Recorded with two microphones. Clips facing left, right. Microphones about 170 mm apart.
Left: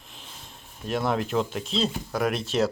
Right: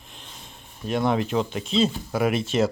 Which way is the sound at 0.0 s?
Centre (ahead or behind).